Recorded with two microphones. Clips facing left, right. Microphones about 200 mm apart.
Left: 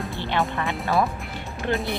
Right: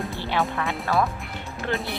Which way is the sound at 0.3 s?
Centre (ahead or behind).